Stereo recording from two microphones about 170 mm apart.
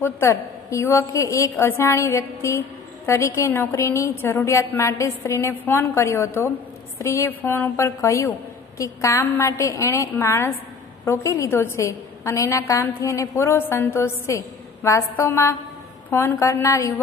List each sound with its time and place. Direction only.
0.0 s a woman's voice: 15° left (ahead or behind)